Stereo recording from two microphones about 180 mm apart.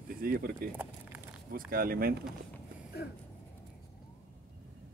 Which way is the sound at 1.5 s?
55° right (ahead or behind).